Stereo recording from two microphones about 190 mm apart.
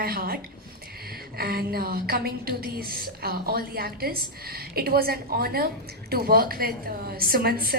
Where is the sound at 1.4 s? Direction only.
50° right (ahead or behind).